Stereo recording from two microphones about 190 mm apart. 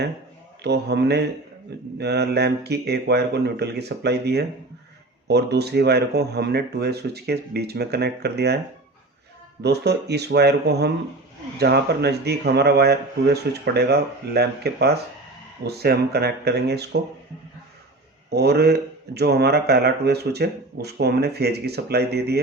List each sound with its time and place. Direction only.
0.6 s speech: 60° right (ahead or behind)
9.6 s speech: 60° right (ahead or behind)
18.3 s speech: 60° right (ahead or behind)